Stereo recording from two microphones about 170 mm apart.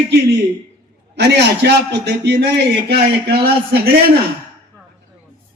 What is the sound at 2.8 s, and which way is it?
A man's voice, 70° right (ahead or behind).